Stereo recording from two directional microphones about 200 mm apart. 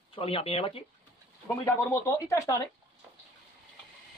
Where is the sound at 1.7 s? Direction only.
15° left (ahead or behind).